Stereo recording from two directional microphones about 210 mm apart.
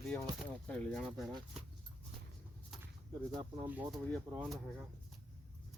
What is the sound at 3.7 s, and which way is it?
Speech, 10° right (ahead or behind).